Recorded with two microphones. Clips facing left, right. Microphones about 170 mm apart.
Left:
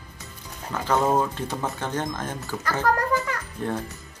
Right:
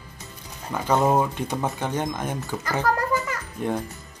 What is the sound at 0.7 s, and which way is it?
Speech, 15° right (ahead or behind).